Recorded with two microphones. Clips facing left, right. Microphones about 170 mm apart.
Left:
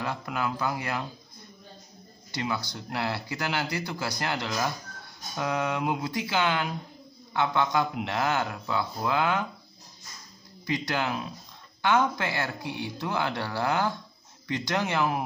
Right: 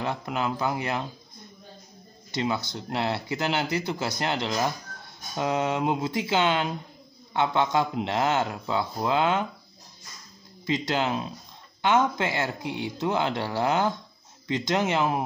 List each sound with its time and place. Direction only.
0.0 s speech: 20° right (ahead or behind)
2.3 s speech: 20° right (ahead or behind)
10.7 s speech: 20° right (ahead or behind)